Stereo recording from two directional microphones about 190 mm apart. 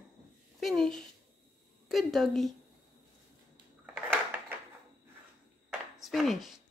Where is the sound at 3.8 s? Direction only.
10° right (ahead or behind).